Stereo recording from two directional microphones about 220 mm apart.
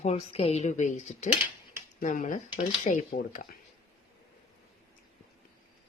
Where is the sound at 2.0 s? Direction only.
35° left (ahead or behind).